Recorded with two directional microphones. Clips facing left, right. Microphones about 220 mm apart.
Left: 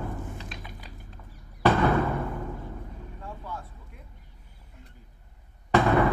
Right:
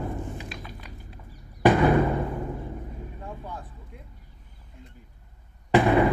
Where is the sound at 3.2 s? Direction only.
15° right (ahead or behind).